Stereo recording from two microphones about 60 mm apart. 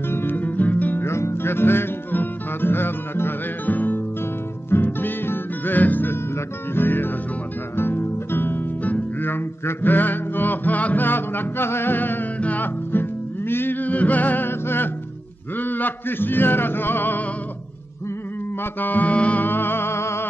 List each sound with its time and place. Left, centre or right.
0.1 s music: left
1.0 s music: left
7.7 s guitar: left
8.9 s music: left
15.5 s speech: left
18.6 s music: left
19.4 s music: left